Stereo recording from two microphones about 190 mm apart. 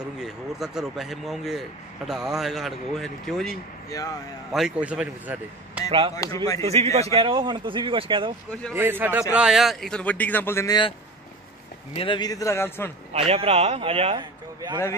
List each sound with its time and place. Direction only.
0.2 s speech: centre (ahead or behind)
5.9 s speech: 30° right (ahead or behind)
6.1 s a man's voice: 20° left (ahead or behind)
6.6 s a man's voice: 30° right (ahead or behind)
8.7 s a man's voice: 10° right (ahead or behind); by 12.9 s 10° left (ahead or behind)
13.1 s a man's voice: 30° right (ahead or behind)